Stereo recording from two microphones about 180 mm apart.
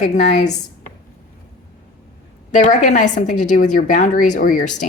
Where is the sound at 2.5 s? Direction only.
40° left (ahead or behind).